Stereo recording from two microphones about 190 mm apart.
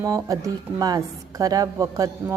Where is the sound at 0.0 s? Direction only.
15° right (ahead or behind).